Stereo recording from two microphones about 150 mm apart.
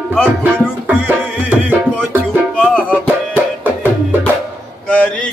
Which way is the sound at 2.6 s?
10° left (ahead or behind).